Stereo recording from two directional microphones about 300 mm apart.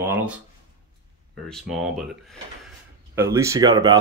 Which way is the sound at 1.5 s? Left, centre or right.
Centre.